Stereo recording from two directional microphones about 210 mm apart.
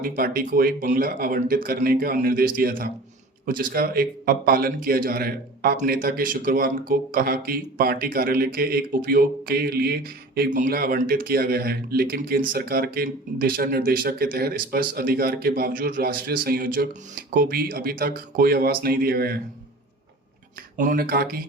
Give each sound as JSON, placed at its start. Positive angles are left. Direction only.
{"t": 0.0, "sound": "a man's voice", "side_deg": -45}
{"t": 20.7, "sound": "a man's voice", "side_deg": -40}